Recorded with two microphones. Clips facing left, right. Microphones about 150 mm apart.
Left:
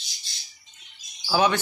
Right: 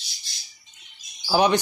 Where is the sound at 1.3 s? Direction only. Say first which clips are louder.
Right 2 dB; 20° right (ahead or behind).